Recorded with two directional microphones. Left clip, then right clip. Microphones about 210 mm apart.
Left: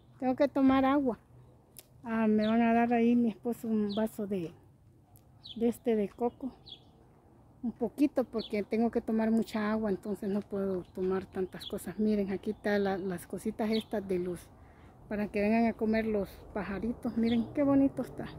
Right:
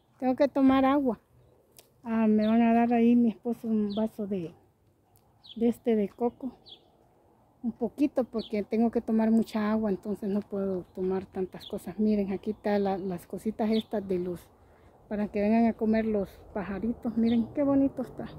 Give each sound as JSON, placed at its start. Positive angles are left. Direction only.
{"t": 0.2, "sound": "speech", "side_deg": -10}
{"t": 5.6, "sound": "speech", "side_deg": -5}